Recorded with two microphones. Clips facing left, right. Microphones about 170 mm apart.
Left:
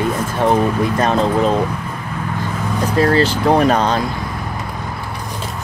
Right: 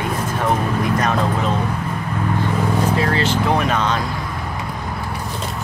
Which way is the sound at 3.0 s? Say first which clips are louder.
Left 5 dB; 40° left (ahead or behind).